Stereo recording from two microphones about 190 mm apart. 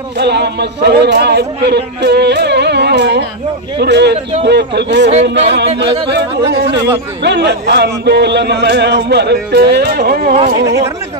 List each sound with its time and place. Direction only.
0.2 s speech: 60° right (ahead or behind)